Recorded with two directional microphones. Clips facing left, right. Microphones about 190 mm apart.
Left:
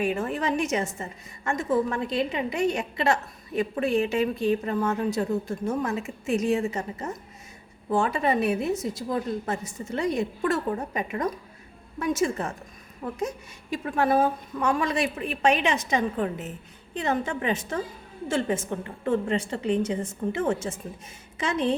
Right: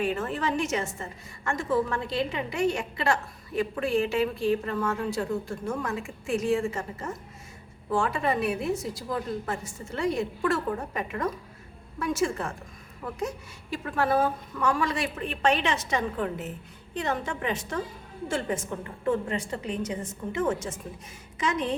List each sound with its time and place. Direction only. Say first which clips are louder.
0.0 s a woman's voice: left 2 dB; 15° left (ahead or behind)